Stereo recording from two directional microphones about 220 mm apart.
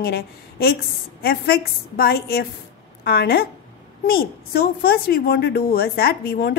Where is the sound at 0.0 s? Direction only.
45° left (ahead or behind).